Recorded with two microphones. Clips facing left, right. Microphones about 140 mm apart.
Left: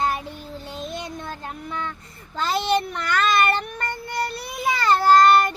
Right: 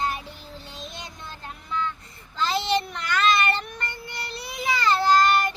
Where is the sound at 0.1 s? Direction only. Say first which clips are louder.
Left 5 dB; 45° left (ahead or behind).